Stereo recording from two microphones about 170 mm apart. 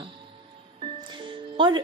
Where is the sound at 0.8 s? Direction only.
30° right (ahead or behind).